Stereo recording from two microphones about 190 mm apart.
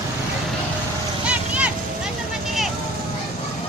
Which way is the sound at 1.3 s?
5° right (ahead or behind).